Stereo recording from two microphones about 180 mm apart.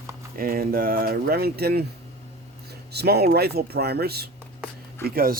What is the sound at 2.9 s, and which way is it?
Speech, 65° right (ahead or behind).